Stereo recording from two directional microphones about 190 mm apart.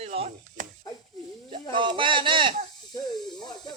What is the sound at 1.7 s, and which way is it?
Speech, 25° right (ahead or behind).